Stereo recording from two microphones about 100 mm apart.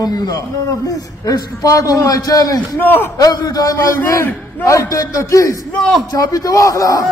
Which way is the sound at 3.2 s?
40° left (ahead or behind).